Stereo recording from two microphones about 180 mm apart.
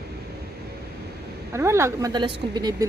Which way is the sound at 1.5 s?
15° right (ahead or behind).